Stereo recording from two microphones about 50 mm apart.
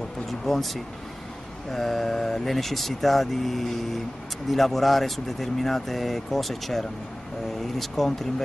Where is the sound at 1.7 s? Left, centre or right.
Centre.